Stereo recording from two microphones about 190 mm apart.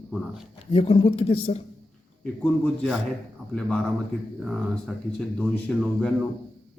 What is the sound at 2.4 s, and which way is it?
Speech, centre (ahead or behind).